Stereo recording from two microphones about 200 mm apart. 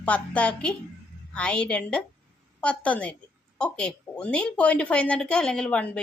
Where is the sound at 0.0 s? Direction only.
5° left (ahead or behind).